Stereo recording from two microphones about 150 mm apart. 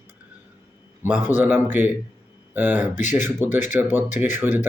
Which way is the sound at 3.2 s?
15° right (ahead or behind).